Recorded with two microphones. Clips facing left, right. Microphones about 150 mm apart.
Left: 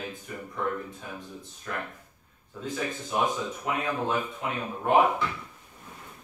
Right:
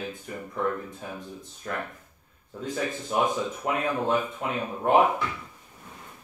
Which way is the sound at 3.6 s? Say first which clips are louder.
Right 2 dB; 45° right (ahead or behind).